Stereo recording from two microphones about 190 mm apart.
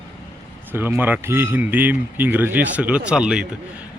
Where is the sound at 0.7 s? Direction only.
10° right (ahead or behind).